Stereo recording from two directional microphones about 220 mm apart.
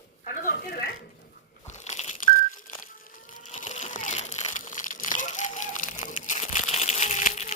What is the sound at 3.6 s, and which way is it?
Crumpling, 35° left (ahead or behind).